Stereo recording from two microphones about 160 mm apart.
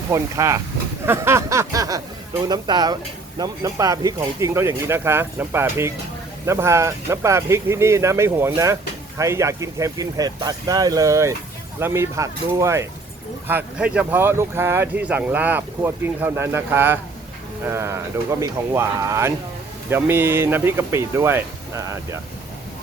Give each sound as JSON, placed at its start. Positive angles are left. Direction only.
{"t": 0.1, "sound": "speech", "side_deg": -20}